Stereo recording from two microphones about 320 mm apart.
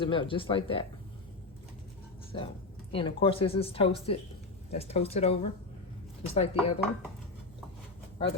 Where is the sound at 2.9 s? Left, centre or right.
Centre.